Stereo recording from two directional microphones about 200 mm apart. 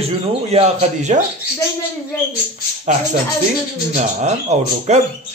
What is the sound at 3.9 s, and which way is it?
Speech, 35° right (ahead or behind).